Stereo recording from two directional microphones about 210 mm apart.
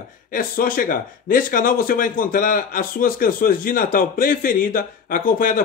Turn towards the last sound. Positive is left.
turn(degrees=40)  # may be behind; listen again after turning